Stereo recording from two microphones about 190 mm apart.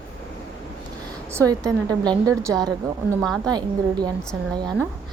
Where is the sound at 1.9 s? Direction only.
20° right (ahead or behind).